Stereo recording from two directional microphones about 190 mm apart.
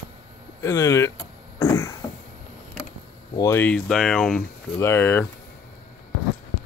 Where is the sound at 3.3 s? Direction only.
15° left (ahead or behind).